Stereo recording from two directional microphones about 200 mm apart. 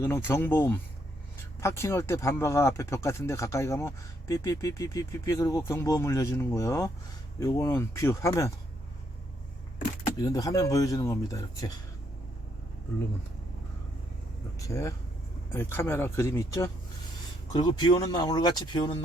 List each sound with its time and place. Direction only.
0.0 s speech: 10° left (ahead or behind)
10.2 s speech: 20° left (ahead or behind)
14.7 s speech: 15° left (ahead or behind)